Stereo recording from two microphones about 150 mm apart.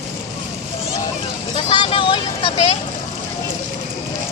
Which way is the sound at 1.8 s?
35° left (ahead or behind).